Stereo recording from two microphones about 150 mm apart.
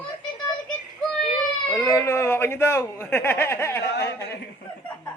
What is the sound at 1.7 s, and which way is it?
Speech, 20° left (ahead or behind).